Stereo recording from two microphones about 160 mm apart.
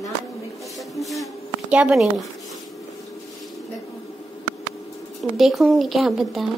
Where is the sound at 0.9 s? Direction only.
Centre (ahead or behind).